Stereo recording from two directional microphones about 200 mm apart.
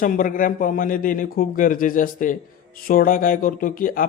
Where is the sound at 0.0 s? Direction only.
45° left (ahead or behind).